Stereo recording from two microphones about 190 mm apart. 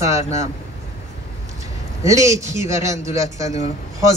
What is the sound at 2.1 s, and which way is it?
Speech, 15° right (ahead or behind).